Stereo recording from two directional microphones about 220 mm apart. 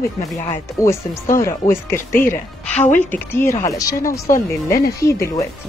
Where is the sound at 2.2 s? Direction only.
35° left (ahead or behind).